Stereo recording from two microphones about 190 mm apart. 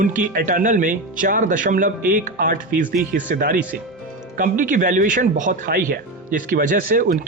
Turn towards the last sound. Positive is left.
turn(degrees=-45)  # may be behind; listen again after turning